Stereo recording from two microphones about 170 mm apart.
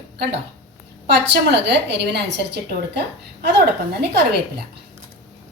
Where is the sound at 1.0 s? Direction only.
80° right.